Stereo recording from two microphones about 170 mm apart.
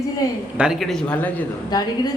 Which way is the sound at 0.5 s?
Centre (ahead or behind).